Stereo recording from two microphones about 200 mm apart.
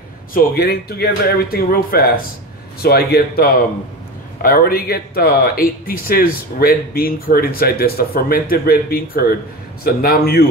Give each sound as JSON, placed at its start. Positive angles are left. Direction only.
{"t": 0.3, "sound": "speech", "side_deg": 50}